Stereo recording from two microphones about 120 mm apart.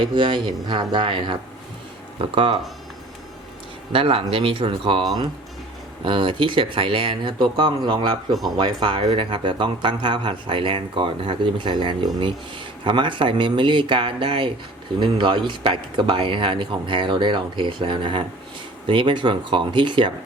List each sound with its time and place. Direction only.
0.1 s speech: 40° right (ahead or behind)
3.9 s speech: 50° right (ahead or behind)
6.1 s speech: 45° right (ahead or behind)